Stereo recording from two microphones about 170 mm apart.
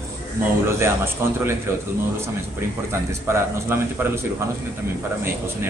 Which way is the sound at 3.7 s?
15° right (ahead or behind).